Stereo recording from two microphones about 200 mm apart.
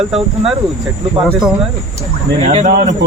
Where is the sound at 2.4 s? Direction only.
35° right (ahead or behind).